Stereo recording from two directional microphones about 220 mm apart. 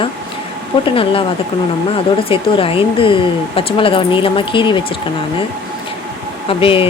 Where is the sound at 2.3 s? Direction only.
25° left (ahead or behind).